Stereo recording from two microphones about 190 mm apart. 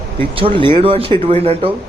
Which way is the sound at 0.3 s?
30° right (ahead or behind).